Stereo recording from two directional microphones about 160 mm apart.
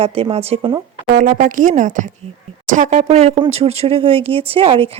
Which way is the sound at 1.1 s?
55° right (ahead or behind).